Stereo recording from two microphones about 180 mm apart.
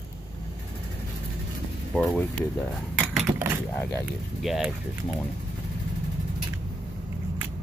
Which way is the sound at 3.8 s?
10° left (ahead or behind).